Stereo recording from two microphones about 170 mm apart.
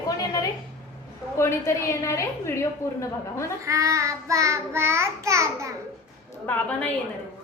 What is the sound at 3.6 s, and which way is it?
Child singing, 20° right (ahead or behind).